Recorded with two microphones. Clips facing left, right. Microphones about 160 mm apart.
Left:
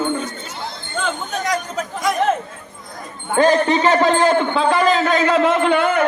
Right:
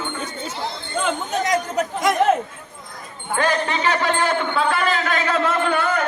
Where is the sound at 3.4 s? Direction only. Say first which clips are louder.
Left 7 dB; 40° left (ahead or behind).